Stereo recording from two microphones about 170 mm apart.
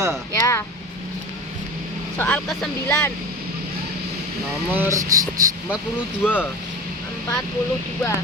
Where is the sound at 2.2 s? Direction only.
5° left (ahead or behind).